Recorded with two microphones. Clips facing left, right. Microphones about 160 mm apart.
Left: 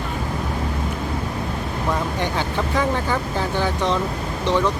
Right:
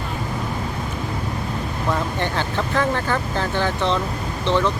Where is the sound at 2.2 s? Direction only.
10° left (ahead or behind).